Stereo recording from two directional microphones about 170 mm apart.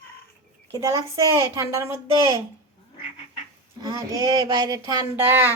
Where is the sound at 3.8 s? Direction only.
20° right (ahead or behind).